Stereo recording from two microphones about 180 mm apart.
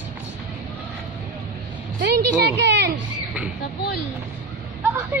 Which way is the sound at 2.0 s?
70° right (ahead or behind).